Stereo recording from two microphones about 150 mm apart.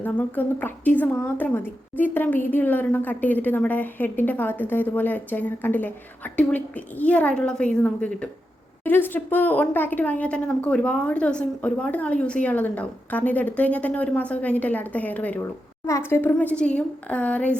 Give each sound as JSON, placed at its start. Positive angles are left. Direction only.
{"t": 0.0, "sound": "a woman's voice", "side_deg": 10}